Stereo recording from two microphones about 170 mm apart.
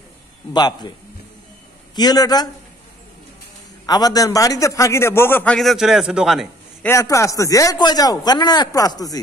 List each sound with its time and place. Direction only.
0.5 s speech: 25° left (ahead or behind)
2.0 s speech: 20° left (ahead or behind)
3.8 s a man's voice: 25° left (ahead or behind); by 6.5 s centre (ahead or behind)
6.8 s speech: 15° left (ahead or behind)